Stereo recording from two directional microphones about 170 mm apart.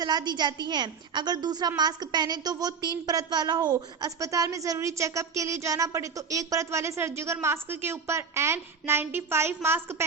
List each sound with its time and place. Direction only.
0.0 s a woman's voice: 25° right (ahead or behind)